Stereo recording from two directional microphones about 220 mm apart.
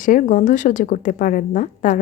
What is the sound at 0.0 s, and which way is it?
Speech, 35° left (ahead or behind).